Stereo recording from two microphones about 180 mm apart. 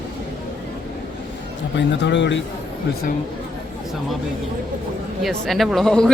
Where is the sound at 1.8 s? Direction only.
90° left.